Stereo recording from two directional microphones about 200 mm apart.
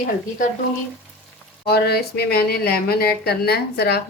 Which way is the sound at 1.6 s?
55° left (ahead or behind).